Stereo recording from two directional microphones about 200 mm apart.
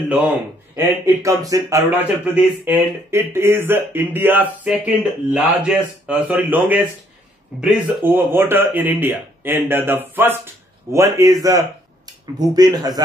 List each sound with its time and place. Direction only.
0.7 s speech: 15° right (ahead or behind)